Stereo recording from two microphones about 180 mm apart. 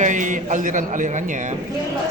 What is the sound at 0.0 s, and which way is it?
A man's voice, 45° right (ahead or behind).